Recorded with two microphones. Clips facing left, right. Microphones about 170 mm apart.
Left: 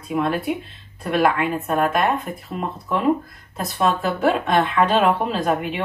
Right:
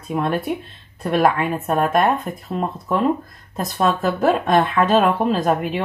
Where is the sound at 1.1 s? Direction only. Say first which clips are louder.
Right 1 dB; 40° right (ahead or behind).